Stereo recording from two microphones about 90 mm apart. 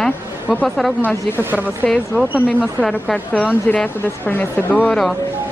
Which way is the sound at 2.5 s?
15° left (ahead or behind).